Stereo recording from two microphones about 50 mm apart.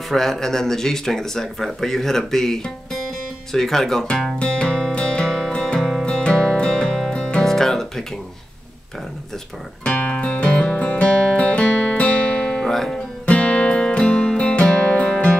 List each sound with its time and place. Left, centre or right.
0.1 s speech: centre
4.4 s music: centre
7.4 s guitar: centre
10.1 s music: left
13.3 s music: left